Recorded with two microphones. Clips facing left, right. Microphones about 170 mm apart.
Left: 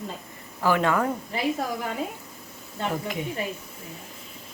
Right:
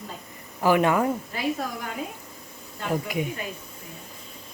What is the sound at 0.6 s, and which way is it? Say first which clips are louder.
Speech: right 2 dB; 15° right (ahead or behind).